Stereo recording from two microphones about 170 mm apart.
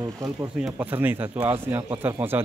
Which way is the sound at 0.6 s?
5° right (ahead or behind).